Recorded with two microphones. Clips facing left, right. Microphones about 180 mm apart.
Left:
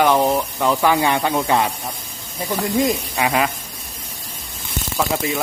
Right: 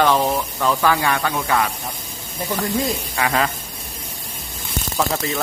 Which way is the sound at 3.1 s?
15° left (ahead or behind).